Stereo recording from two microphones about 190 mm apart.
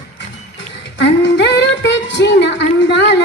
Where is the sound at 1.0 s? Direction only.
65° left (ahead or behind).